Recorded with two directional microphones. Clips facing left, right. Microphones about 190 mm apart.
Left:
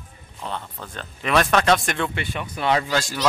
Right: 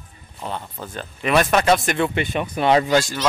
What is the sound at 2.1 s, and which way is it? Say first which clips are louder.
Speech: right 6 dB; 20° right (ahead or behind).